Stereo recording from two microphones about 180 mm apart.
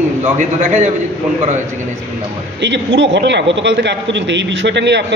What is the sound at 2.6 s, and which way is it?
A man's voice, 80° right.